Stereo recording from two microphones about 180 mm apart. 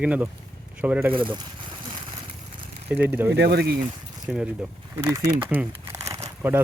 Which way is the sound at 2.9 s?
10° right (ahead or behind).